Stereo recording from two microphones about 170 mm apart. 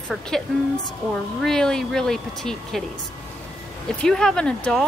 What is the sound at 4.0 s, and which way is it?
Speech, 5° left (ahead or behind).